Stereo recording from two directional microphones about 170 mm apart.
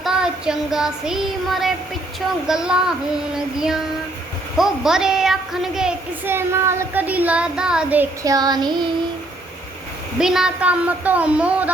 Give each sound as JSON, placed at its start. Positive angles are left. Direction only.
{"t": 0.0, "sound": "child singing", "side_deg": -5}
{"t": 2.5, "sound": "a woman's voice", "side_deg": -5}
{"t": 8.2, "sound": "child singing", "side_deg": -20}
{"t": 10.2, "sound": "speech", "side_deg": -5}